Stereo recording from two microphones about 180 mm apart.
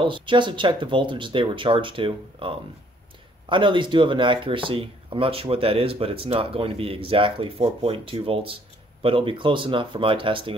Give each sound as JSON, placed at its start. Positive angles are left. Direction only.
{"t": 0.0, "sound": "speech", "side_deg": -25}